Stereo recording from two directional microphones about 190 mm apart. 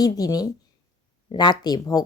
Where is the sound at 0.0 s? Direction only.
20° left (ahead or behind).